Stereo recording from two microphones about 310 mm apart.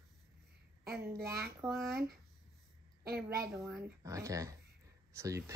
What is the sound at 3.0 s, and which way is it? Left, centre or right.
Speech, right.